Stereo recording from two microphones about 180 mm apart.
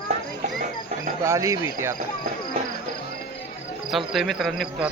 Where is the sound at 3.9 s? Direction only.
Centre (ahead or behind).